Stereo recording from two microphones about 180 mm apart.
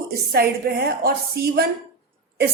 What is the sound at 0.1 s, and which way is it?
A woman's voice, 60° right (ahead or behind).